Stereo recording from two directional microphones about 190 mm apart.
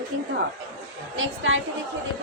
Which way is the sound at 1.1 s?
90° right.